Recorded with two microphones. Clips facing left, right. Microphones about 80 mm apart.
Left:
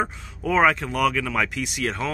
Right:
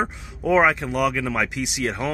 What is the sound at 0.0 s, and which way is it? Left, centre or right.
Speech, centre.